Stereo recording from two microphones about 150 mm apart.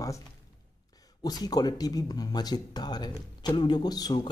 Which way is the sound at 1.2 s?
25° left (ahead or behind).